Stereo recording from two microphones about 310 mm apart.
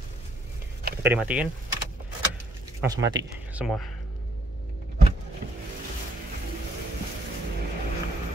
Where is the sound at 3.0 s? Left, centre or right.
Right.